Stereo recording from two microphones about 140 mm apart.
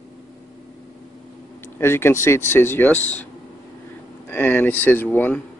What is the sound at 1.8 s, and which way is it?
Speech, 15° left (ahead or behind).